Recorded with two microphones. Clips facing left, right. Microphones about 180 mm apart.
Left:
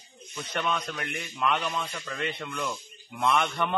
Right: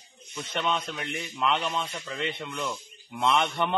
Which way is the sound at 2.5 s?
10° right (ahead or behind).